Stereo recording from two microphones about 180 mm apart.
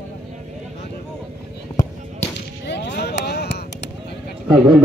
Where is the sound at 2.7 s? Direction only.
70° left (ahead or behind).